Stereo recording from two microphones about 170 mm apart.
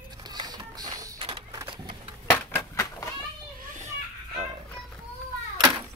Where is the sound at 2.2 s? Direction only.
10° left (ahead or behind).